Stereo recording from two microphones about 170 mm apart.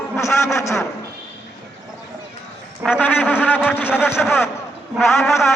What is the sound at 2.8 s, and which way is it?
A man's voice, 10° left (ahead or behind).